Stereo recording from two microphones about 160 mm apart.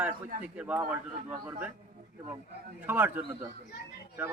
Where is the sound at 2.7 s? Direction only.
10° right (ahead or behind).